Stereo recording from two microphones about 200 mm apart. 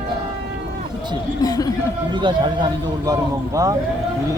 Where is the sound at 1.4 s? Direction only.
20° left (ahead or behind).